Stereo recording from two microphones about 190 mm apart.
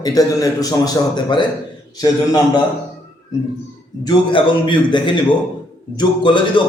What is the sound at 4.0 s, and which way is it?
A man's voice, 25° left (ahead or behind).